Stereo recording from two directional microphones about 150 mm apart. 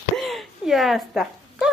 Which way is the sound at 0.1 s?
Centre (ahead or behind).